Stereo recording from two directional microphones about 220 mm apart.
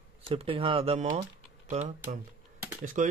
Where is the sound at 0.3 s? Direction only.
25° right (ahead or behind).